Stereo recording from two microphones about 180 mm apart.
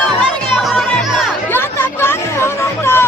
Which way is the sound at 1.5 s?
15° left (ahead or behind).